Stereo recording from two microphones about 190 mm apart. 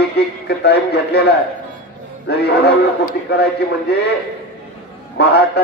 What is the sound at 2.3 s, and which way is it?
Speech, 55° left (ahead or behind).